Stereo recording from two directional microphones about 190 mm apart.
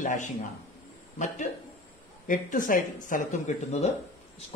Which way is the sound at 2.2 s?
45° left (ahead or behind).